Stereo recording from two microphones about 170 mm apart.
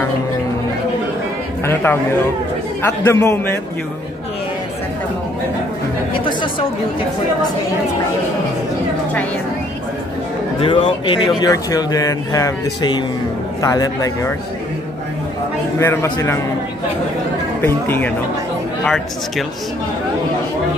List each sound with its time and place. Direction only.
1.7 s a man's voice: 10° left (ahead or behind)
6.1 s speech: 30° left (ahead or behind)
10.6 s speech: 30° left (ahead or behind)
15.8 s a man's voice: 15° left (ahead or behind)
17.6 s a man's voice: 15° left (ahead or behind)